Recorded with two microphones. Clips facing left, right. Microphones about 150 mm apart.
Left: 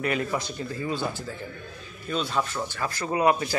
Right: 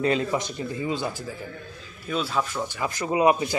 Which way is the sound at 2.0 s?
5° right (ahead or behind).